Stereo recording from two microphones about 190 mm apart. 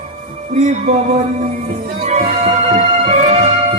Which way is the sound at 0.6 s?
40° right (ahead or behind).